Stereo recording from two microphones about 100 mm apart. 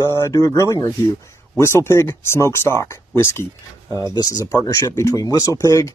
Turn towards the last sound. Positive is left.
turn(degrees=30)  # may be behind; listen again after turning